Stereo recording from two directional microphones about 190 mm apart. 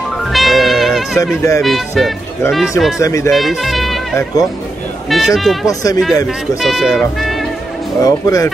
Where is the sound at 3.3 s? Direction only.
Centre (ahead or behind).